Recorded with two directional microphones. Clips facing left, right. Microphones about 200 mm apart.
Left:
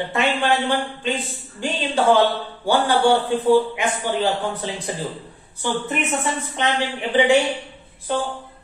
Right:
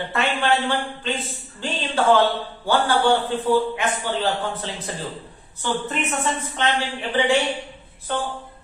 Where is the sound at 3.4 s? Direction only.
15° left (ahead or behind).